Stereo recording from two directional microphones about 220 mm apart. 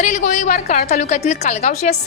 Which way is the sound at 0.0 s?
35° left (ahead or behind).